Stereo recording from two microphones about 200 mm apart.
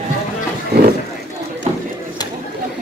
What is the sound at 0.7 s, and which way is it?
Vehicle, 55° right (ahead or behind).